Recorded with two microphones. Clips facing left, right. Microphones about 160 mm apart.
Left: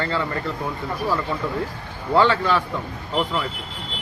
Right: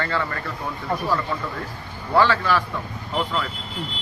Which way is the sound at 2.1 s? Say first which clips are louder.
Left 1 dB; 20° left (ahead or behind).